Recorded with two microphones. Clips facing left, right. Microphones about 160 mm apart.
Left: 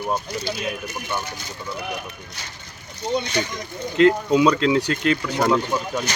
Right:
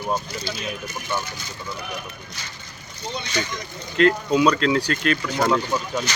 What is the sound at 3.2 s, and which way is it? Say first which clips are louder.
Speech: left 2 dB; 55° left (ahead or behind).